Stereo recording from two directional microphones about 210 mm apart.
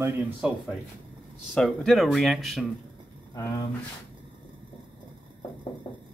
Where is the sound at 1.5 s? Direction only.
5° left (ahead or behind).